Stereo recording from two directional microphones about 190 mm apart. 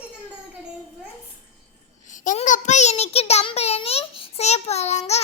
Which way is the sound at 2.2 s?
40° left (ahead or behind).